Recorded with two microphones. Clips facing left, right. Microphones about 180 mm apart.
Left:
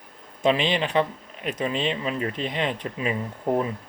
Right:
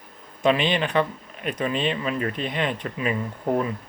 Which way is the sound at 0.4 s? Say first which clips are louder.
Right 1 dB; 25° left (ahead or behind).